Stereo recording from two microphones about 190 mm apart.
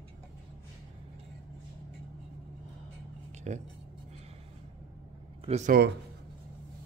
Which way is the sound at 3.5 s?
40° right (ahead or behind).